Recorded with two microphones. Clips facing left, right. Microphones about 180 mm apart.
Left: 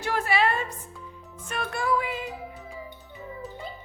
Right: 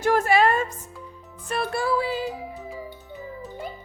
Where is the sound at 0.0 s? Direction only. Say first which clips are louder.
Right 6 dB; 45° right (ahead or behind).